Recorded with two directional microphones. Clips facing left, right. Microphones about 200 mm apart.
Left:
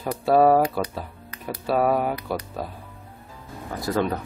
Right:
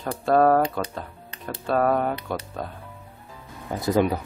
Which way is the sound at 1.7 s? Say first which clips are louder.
Even; 5° left (ahead or behind).